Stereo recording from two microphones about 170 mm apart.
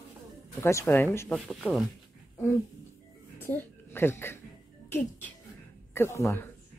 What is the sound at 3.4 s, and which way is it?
Speech, 10° left (ahead or behind).